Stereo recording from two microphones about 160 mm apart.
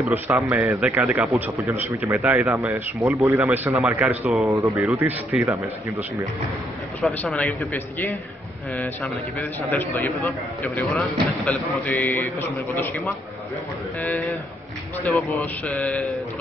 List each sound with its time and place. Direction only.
0.1 s speech: 15° right (ahead or behind)
7.0 s a man's voice: centre (ahead or behind)
10.9 s a man's voice: centre (ahead or behind)